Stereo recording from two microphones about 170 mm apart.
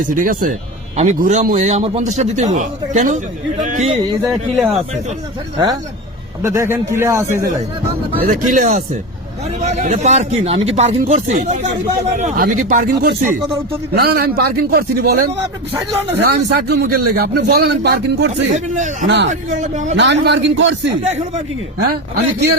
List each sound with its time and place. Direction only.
0.0 s a man's voice: 55° right (ahead or behind)
0.9 s a man's voice: 45° right (ahead or behind)
4.5 s speech: centre (ahead or behind)
6.4 s a man's voice: 15° right (ahead or behind)
8.3 s a man's voice: 50° right (ahead or behind)
13.9 s speech: 70° right (ahead or behind)
16.2 s speech: 70° right (ahead or behind)
18.4 s a man's voice: 45° right (ahead or behind)
19.0 s a man's voice: 90° right
19.3 s a man's voice: 45° right (ahead or behind)
20.0 s a man's voice: 90° right